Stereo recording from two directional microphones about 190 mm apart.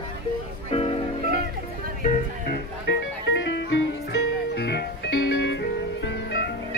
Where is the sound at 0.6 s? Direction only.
30° left (ahead or behind).